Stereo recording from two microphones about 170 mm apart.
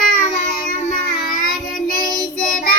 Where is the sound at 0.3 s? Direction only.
45° left (ahead or behind).